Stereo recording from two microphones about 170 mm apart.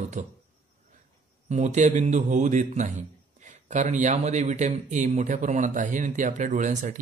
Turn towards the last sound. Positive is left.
turn(degrees=-45)  # may be behind; listen again after turning